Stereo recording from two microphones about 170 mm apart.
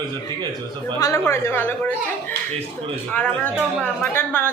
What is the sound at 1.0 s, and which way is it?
A woman's voice, 15° left (ahead or behind).